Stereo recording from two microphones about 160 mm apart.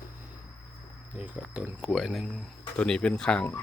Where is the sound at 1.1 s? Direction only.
10° right (ahead or behind).